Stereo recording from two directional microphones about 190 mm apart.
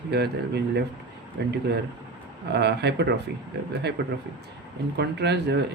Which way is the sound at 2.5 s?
60° right (ahead or behind).